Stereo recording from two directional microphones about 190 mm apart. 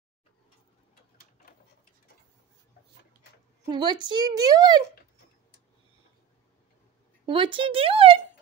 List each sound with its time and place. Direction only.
3.6 s speech: 25° right (ahead or behind)
7.2 s speech: 25° right (ahead or behind)